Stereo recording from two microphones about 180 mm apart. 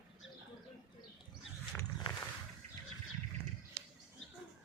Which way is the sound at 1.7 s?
5° left (ahead or behind).